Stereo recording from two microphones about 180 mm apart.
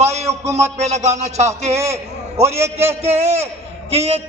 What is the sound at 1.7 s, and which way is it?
A man's voice, 15° right (ahead or behind).